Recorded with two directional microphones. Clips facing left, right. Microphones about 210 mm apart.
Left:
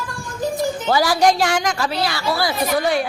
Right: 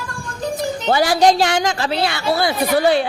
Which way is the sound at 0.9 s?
25° right (ahead or behind).